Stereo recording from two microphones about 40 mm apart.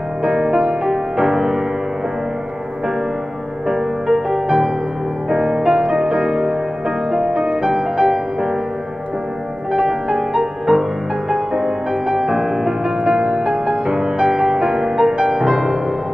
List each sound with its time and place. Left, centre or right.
0.2 s music: centre
3.6 s music: centre
9.7 s music: centre